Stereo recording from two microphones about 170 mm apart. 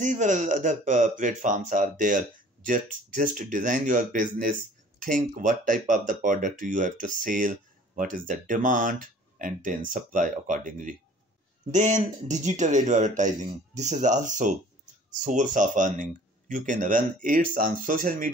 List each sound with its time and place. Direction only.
0.0 s speech: 45° right (ahead or behind)